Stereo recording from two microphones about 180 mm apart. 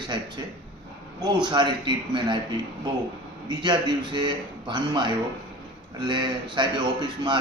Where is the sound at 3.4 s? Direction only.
25° right (ahead or behind).